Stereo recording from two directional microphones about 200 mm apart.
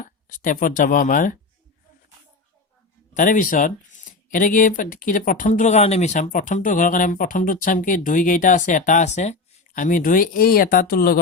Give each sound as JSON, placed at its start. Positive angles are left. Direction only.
{"t": 0.0, "sound": "speech", "side_deg": 40}
{"t": 3.2, "sound": "speech", "side_deg": 40}